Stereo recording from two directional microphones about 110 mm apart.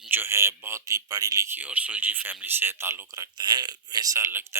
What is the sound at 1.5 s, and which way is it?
Speech, 15° right (ahead or behind).